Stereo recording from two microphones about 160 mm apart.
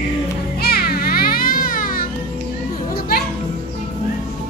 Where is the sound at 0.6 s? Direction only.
75° left (ahead or behind).